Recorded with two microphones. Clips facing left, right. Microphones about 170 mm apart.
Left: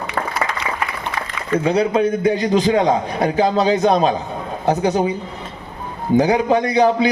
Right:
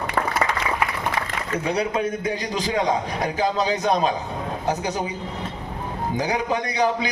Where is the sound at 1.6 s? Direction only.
25° left (ahead or behind).